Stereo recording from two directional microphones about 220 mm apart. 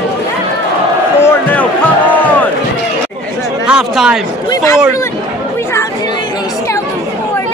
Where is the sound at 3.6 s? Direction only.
5° right (ahead or behind).